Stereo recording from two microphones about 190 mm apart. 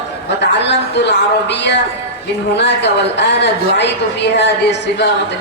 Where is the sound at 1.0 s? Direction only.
65° left (ahead or behind).